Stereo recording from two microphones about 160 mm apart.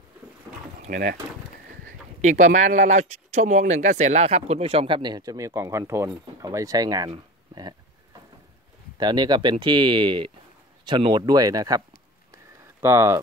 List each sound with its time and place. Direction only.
0.8 s speech: 50° right (ahead or behind); by 7.1 s 25° right (ahead or behind)
8.9 s speech: 25° right (ahead or behind)
12.3 s a sound: 15° right (ahead or behind)